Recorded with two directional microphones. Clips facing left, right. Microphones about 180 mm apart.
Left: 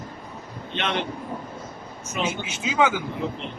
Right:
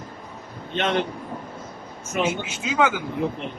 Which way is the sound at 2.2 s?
55° right (ahead or behind).